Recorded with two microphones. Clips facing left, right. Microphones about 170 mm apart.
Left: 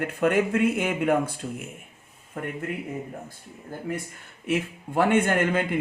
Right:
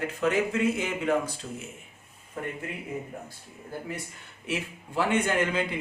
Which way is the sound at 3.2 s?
50° left (ahead or behind).